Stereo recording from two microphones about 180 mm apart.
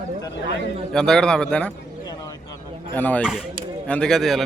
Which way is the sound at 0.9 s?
5° left (ahead or behind).